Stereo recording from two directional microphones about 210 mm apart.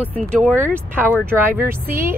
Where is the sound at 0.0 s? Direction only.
5° left (ahead or behind).